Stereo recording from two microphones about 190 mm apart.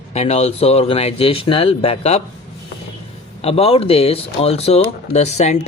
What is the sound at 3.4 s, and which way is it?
Speech, 30° left (ahead or behind).